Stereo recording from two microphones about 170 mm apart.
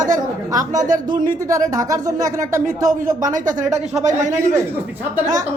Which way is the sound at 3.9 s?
45° right (ahead or behind).